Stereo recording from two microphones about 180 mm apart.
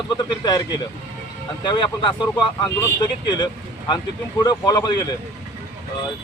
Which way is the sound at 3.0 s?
25° left (ahead or behind).